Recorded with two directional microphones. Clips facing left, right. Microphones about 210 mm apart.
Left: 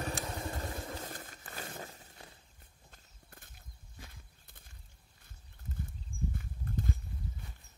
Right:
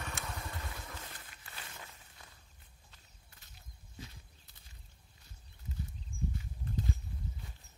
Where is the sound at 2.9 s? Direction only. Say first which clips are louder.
Left 6 dB; 50° left (ahead or behind).